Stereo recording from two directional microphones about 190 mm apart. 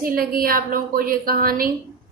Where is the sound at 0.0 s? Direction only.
50° right (ahead or behind).